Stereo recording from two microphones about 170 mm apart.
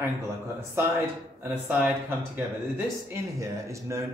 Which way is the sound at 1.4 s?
10° right (ahead or behind).